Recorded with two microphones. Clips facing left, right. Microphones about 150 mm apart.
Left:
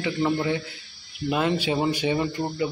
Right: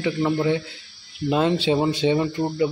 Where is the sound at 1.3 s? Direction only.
25° right (ahead or behind).